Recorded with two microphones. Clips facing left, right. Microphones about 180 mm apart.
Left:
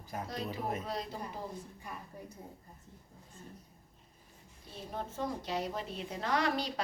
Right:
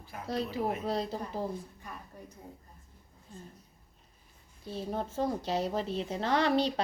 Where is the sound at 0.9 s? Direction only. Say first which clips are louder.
Right 6 dB; 30° right (ahead or behind).